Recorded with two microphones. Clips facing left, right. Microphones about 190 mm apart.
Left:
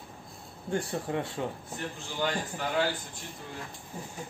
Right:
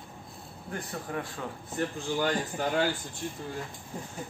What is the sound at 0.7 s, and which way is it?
Speech, 25° left (ahead or behind).